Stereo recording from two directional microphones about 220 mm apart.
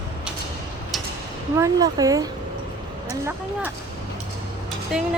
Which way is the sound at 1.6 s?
15° right (ahead or behind).